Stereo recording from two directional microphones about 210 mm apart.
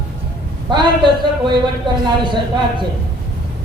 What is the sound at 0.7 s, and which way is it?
A man's voice, 20° right (ahead or behind).